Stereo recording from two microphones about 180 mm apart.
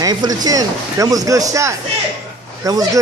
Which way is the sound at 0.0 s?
20° right (ahead or behind).